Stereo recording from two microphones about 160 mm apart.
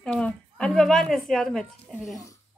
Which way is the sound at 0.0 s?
5° left (ahead or behind).